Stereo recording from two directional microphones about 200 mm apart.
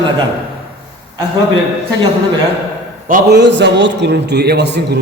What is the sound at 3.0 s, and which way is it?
A man's voice, 50° right (ahead or behind).